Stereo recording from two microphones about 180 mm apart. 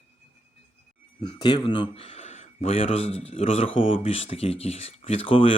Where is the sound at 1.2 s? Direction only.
25° left (ahead or behind).